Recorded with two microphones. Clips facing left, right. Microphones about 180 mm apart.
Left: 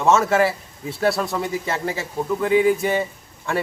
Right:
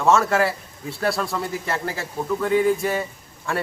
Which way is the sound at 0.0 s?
5° left (ahead or behind).